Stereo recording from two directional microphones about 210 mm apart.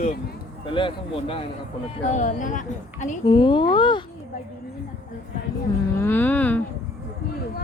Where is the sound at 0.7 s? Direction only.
25° left (ahead or behind).